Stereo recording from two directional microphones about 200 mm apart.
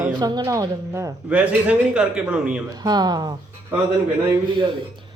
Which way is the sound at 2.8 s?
20° right (ahead or behind).